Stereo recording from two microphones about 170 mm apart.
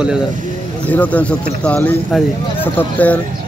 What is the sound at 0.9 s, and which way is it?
Speech, 10° left (ahead or behind).